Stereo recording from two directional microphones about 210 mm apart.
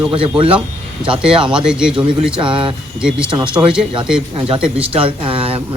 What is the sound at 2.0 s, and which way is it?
Speech, 25° right (ahead or behind).